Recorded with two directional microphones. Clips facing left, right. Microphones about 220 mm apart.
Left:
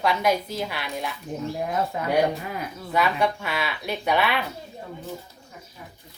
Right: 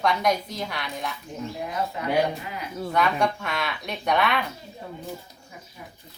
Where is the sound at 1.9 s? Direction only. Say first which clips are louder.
Left 2 dB; 50° left (ahead or behind).